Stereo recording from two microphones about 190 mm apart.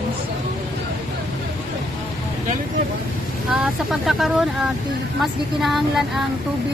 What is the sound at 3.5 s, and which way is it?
Speech, 5° right (ahead or behind).